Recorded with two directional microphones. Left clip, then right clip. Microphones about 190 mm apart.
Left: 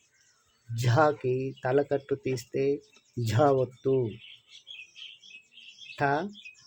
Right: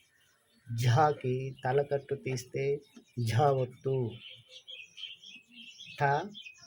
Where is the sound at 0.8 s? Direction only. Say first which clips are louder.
Left 3 dB; 55° left (ahead or behind).